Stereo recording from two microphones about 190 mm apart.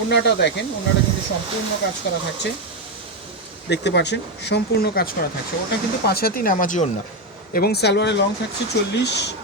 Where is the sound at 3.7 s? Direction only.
65° left (ahead or behind).